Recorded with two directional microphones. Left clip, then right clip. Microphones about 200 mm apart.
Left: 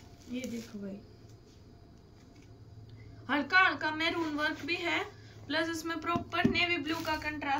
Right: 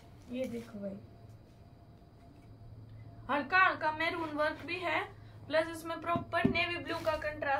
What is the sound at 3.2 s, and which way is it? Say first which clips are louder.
Speech: left 2 dB; 20° right (ahead or behind).